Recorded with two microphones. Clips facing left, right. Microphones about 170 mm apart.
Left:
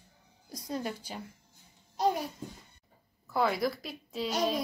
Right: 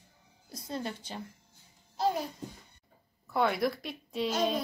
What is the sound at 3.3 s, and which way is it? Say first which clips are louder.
Speech: right 1 dB; centre (ahead or behind).